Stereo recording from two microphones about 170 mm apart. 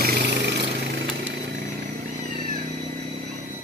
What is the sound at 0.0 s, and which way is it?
Jackhammer, 90° right.